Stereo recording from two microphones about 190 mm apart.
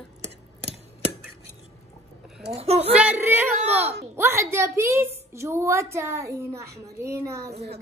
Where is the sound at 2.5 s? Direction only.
35° right (ahead or behind).